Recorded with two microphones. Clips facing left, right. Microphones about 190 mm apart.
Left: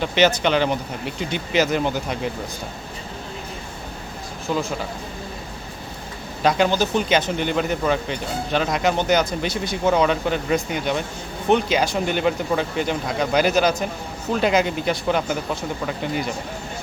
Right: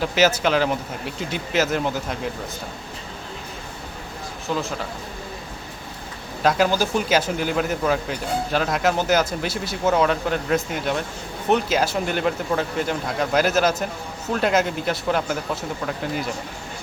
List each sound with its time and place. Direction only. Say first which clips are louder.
0.0 s speech: left 1 dB; 5° right (ahead or behind)
4.5 s speech: left 2 dB; 5° left (ahead or behind)
6.4 s speech: left 1 dB; centre (ahead or behind)